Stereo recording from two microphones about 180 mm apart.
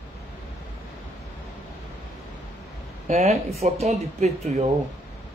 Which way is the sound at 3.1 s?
35° right (ahead or behind).